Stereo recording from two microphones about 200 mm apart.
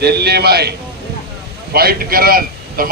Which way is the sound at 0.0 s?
55° right (ahead or behind).